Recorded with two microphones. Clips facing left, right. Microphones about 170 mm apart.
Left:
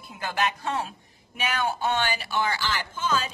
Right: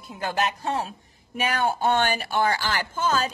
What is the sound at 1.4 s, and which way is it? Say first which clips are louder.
Speech: right 3 dB; 50° right (ahead or behind).